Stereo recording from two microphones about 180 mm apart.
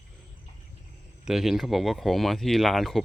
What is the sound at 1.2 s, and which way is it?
Speech, centre (ahead or behind).